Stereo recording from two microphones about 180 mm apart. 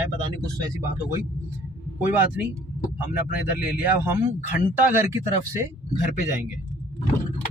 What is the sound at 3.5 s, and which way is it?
Speech, 10° right (ahead or behind).